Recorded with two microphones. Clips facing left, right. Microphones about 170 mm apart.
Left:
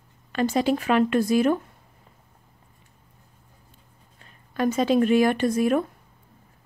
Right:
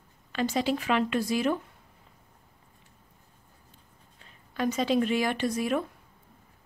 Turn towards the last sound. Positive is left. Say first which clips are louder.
# left 6 dB
turn(degrees=50)  # may be behind; listen again after turning